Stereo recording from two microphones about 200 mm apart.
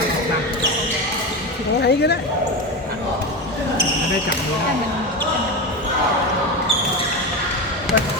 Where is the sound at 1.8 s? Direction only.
55° left (ahead or behind).